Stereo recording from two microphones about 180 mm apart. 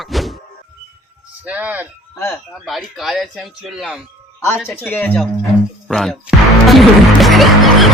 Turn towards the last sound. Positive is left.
turn(degrees=0)  # may be behind; listen again after turning